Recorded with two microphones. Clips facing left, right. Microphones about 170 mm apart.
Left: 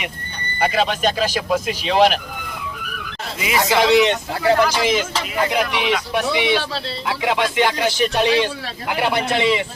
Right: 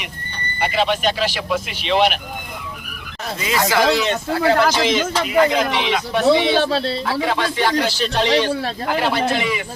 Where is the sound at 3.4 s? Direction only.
15° left (ahead or behind).